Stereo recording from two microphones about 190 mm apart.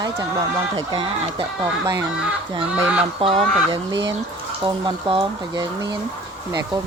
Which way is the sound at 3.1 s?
25° right (ahead or behind).